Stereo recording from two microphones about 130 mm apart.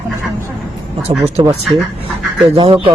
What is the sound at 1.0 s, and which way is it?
Speech, 50° right (ahead or behind).